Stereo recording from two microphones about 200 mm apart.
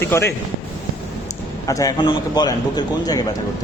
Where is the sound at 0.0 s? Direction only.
10° left (ahead or behind).